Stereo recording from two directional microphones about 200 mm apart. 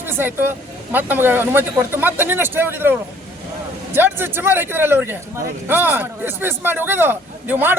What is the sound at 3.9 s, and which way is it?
Speech, 10° right (ahead or behind).